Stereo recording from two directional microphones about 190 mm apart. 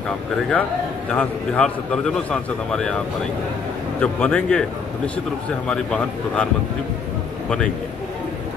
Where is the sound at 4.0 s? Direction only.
5° left (ahead or behind).